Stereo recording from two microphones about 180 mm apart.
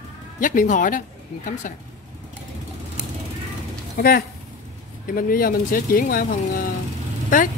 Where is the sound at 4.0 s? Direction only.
55° left (ahead or behind).